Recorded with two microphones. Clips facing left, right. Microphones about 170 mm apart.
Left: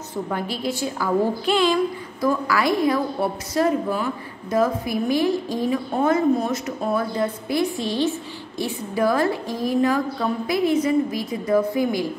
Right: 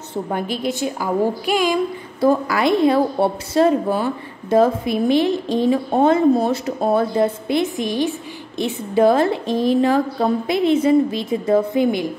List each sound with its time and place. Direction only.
0.1 s a woman's voice: 20° right (ahead or behind)
2.1 s a woman's voice: 25° right (ahead or behind)